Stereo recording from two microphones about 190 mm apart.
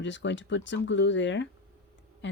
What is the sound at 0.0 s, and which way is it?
Speech, 70° left (ahead or behind).